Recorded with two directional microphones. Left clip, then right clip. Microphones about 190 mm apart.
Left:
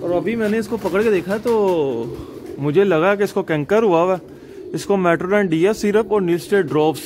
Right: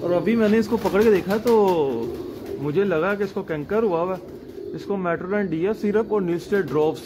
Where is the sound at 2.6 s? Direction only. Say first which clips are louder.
Left 6 dB; 70° left (ahead or behind); by 7.0 s 45° left (ahead or behind).